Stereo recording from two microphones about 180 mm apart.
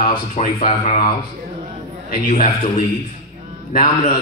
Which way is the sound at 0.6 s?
35° left (ahead or behind).